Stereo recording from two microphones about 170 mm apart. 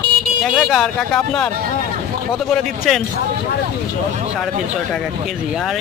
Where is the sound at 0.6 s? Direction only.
Centre (ahead or behind).